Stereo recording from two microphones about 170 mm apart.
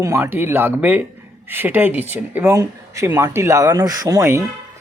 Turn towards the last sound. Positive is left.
turn(degrees=-20)  # may be behind; listen again after turning